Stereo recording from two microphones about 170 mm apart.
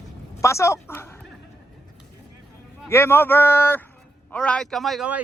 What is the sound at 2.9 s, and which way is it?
A man's voice, 15° left (ahead or behind).